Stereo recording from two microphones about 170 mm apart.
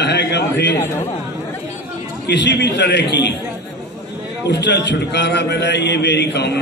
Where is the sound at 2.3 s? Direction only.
90° left.